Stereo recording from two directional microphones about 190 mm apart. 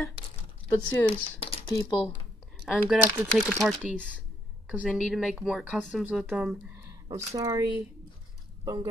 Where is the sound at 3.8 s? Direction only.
40° left (ahead or behind).